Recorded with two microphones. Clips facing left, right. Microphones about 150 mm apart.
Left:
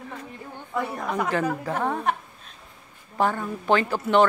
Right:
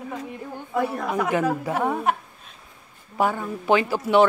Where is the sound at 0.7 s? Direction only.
5° right (ahead or behind).